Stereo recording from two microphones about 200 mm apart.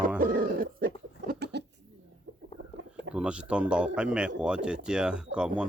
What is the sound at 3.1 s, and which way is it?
Speech, 5° right (ahead or behind).